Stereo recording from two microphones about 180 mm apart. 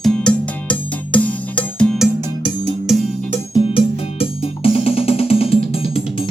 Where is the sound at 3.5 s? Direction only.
30° left (ahead or behind).